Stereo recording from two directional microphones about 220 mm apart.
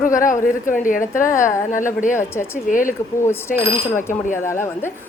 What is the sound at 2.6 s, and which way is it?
Speech, 40° left (ahead or behind).